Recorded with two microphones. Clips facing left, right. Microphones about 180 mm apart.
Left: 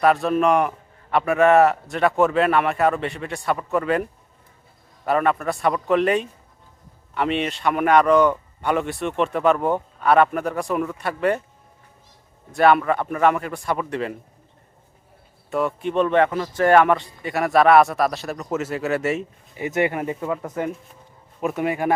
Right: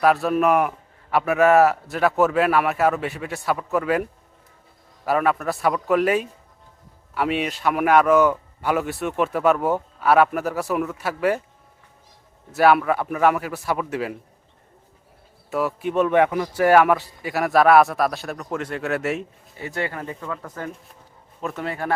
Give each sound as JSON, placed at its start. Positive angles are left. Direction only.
{"t": 0.0, "sound": "a man's voice", "side_deg": 0}
{"t": 12.5, "sound": "a man's voice", "side_deg": -5}
{"t": 15.4, "sound": "a man's voice", "side_deg": -5}
{"t": 19.5, "sound": "speech", "side_deg": 20}